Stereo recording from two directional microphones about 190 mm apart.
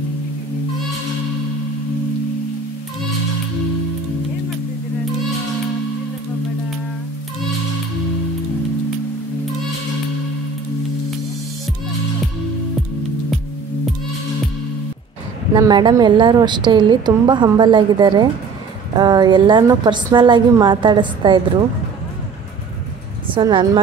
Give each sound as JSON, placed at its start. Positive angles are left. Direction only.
{"t": 15.5, "sound": "a woman's voice", "side_deg": -20}
{"t": 23.2, "sound": "speech", "side_deg": -25}